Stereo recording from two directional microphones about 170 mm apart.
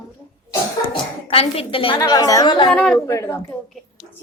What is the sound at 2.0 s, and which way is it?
Speech, 20° left (ahead or behind).